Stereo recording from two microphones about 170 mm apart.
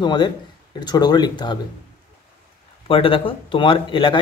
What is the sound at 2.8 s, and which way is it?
Speech, 30° left (ahead or behind).